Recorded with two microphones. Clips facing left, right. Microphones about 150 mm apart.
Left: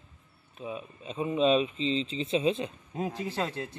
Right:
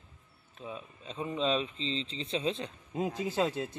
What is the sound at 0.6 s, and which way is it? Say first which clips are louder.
A man's voice: left 5 dB; 10° left (ahead or behind).